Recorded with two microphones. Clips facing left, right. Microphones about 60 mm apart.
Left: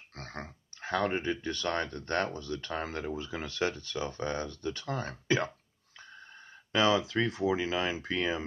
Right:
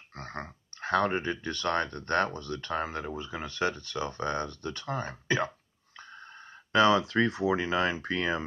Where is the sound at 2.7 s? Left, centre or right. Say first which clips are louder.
Right 3 dB; right.